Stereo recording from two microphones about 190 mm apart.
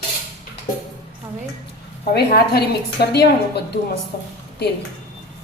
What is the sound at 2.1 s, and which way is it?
A woman's voice, 60° left (ahead or behind).